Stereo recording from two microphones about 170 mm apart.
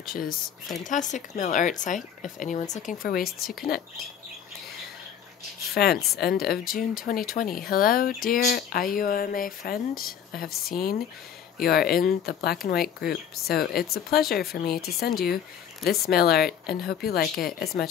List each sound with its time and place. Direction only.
0.0 s speech: 55° left (ahead or behind)
5.8 s speech: 70° left (ahead or behind)